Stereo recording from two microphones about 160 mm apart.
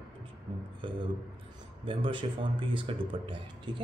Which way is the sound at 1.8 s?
30° right (ahead or behind).